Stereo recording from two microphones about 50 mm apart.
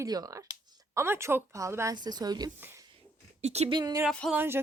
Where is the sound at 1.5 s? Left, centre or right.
Right.